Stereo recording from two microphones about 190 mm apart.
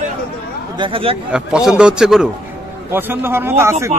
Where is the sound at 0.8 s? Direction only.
30° right (ahead or behind).